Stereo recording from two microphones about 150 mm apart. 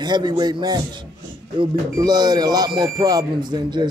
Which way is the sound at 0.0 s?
30° right (ahead or behind).